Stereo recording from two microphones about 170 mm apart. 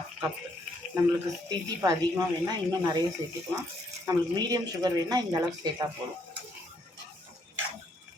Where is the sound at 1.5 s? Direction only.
25° right (ahead or behind).